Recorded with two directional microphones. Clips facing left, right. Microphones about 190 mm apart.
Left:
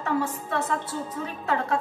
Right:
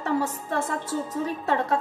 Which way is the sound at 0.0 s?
40° right (ahead or behind).